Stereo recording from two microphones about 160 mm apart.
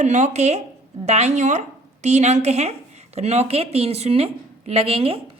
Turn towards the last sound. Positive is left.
turn(degrees=-35)  # may be behind; listen again after turning